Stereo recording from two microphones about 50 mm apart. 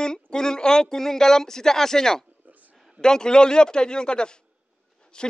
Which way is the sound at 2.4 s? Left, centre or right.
Right.